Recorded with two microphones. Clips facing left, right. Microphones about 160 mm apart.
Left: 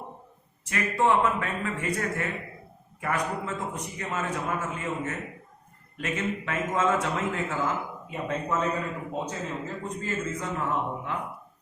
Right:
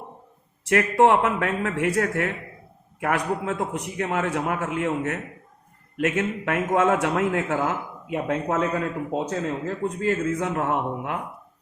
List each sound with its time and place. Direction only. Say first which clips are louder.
0.7 s a man's voice: right 6 dB; 70° right (ahead or behind)